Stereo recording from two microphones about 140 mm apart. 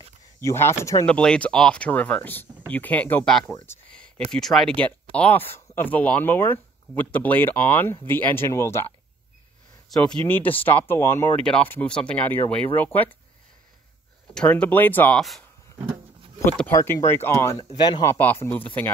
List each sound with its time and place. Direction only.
0.4 s speech: 20° left (ahead or behind)
1.0 s speech: 5° left (ahead or behind)
4.3 s speech: centre (ahead or behind); by 8.8 s 20° left (ahead or behind)
9.8 s speech: 5° left (ahead or behind)
14.3 s speech: 10° left (ahead or behind)
15.1 s speech: centre (ahead or behind)
16.4 s speech: 10° left (ahead or behind)
17.7 s speech: 30° left (ahead or behind)
18.1 s speech: 15° left (ahead or behind)